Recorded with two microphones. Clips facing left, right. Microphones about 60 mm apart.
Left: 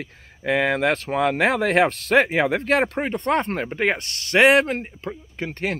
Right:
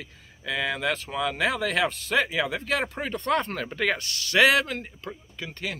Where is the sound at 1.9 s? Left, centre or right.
Left.